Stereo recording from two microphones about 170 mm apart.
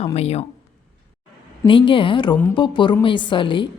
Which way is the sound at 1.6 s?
30° left (ahead or behind).